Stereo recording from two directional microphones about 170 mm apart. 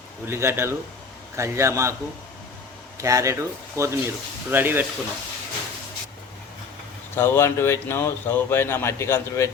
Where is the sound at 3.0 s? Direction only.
20° right (ahead or behind).